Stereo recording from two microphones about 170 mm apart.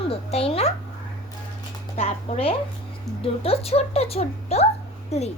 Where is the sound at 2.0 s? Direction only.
35° left (ahead or behind).